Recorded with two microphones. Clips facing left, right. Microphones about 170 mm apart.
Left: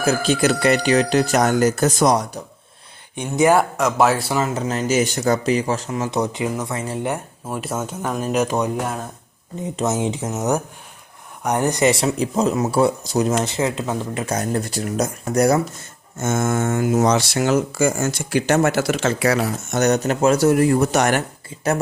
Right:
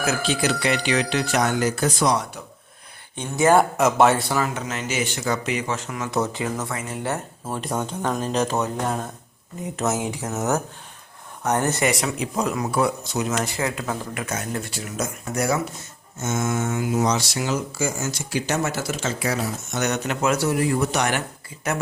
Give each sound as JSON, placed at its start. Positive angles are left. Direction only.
{"t": 0.0, "sound": "speech", "side_deg": 40}
{"t": 3.2, "sound": "speech", "side_deg": 15}
{"t": 3.5, "sound": "speech", "side_deg": 0}
{"t": 4.3, "sound": "speech", "side_deg": 25}
{"t": 6.1, "sound": "speech", "side_deg": 15}
{"t": 13.4, "sound": "speech", "side_deg": 20}
{"t": 16.1, "sound": "speech", "side_deg": 50}
{"t": 19.7, "sound": "speech", "side_deg": 40}
{"t": 20.5, "sound": "speech", "side_deg": 45}
{"t": 21.5, "sound": "speech", "side_deg": 25}